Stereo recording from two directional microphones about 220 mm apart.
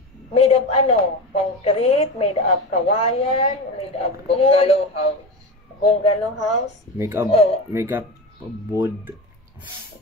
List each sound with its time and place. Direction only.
0.3 s a woman's voice: 30° left (ahead or behind)
7.0 s speech: 10° right (ahead or behind)
7.2 s a woman's voice: 30° left (ahead or behind)
7.7 s speech: 10° right (ahead or behind)